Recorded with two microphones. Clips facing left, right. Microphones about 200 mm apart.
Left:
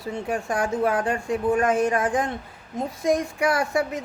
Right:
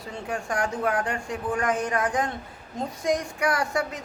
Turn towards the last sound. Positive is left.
turn(degrees=25)  # may be behind; listen again after turning